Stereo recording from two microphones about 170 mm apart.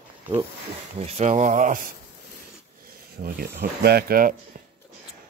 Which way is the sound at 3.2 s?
65° right (ahead or behind).